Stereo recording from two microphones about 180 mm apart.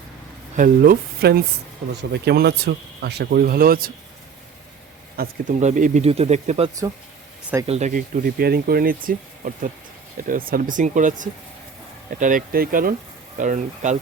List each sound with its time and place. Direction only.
0.5 s speech: 50° right (ahead or behind)
5.1 s speech: 55° right (ahead or behind)
5.5 s speech: 40° right (ahead or behind)
7.7 s speech: 40° right (ahead or behind)